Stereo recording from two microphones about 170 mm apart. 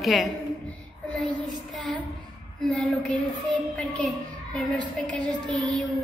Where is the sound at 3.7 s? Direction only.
5° left (ahead or behind).